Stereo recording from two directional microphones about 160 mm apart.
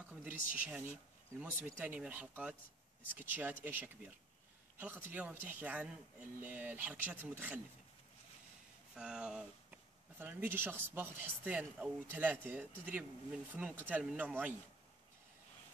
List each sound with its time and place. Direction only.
0.0 s speech: 10° right (ahead or behind)
8.9 s speech: 5° right (ahead or behind)